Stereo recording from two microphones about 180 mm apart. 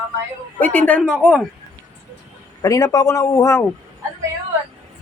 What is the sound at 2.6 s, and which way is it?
Speech, 15° left (ahead or behind).